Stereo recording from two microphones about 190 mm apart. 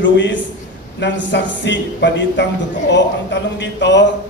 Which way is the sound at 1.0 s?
65° left (ahead or behind).